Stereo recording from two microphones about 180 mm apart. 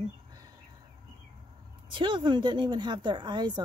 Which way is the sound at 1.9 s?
25° right (ahead or behind).